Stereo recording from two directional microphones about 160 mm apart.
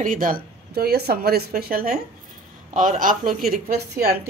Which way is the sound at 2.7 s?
55° right (ahead or behind).